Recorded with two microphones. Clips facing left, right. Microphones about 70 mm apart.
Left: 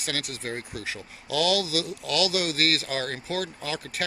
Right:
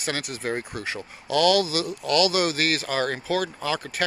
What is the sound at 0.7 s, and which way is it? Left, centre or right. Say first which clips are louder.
Speech: right 3 dB; right.